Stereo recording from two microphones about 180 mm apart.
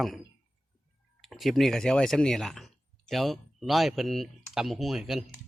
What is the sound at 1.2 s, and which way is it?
Speech, centre (ahead or behind).